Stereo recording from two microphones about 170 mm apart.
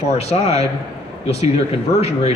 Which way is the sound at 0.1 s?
40° left (ahead or behind).